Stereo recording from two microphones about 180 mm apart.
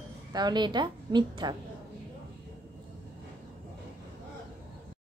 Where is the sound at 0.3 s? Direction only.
25° right (ahead or behind).